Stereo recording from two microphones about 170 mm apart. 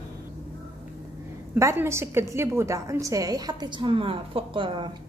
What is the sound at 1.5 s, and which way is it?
A woman's voice, 15° right (ahead or behind).